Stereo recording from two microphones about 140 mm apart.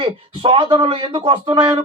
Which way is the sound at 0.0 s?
40° right (ahead or behind).